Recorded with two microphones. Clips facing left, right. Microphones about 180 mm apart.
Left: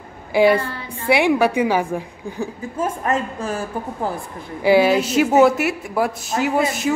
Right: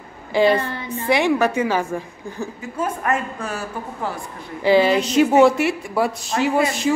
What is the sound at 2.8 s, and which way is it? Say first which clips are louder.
Speech: left 1 dB; 25° left (ahead or behind).